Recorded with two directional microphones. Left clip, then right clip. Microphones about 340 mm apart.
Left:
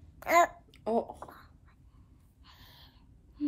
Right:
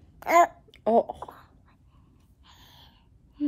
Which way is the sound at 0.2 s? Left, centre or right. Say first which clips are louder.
Right 5 dB; centre.